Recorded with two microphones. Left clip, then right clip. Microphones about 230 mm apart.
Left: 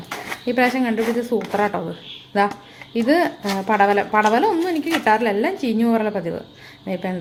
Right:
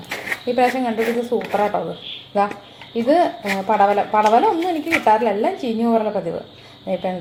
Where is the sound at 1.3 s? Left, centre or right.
Left.